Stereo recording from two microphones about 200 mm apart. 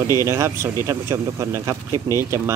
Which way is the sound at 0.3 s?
15° right (ahead or behind).